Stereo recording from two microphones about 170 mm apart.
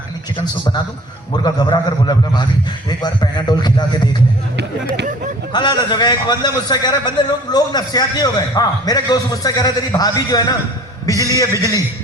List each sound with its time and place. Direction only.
1.5 s a man's voice: 25° left (ahead or behind)
5.5 s a man's voice: 25° left (ahead or behind)